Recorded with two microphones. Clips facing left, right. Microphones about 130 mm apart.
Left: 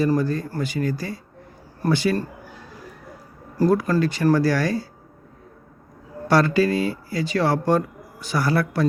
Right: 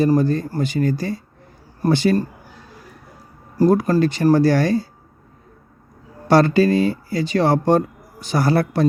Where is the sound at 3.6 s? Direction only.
20° right (ahead or behind).